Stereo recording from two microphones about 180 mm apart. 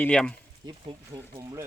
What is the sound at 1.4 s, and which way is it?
Speech, 20° right (ahead or behind).